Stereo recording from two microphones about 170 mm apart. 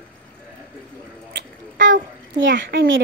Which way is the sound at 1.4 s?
90° right.